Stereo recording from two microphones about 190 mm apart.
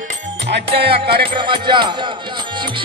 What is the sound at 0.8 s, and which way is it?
Music, 30° right (ahead or behind).